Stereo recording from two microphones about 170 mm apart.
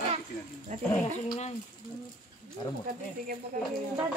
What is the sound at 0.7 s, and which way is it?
Speech, 45° right (ahead or behind).